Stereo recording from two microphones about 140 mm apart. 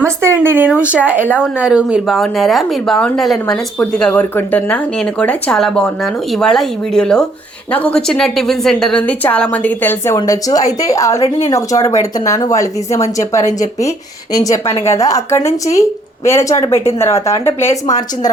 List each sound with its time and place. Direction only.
0.0 s speech: 20° right (ahead or behind); by 17.7 s 20° left (ahead or behind)
17.8 s a woman's voice: 60° left (ahead or behind)